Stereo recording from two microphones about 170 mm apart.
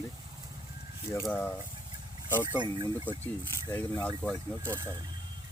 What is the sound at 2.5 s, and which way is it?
Speech, 25° right (ahead or behind).